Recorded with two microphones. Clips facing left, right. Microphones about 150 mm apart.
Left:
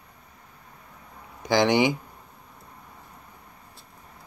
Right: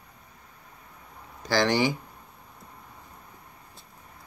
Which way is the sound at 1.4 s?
20° left (ahead or behind).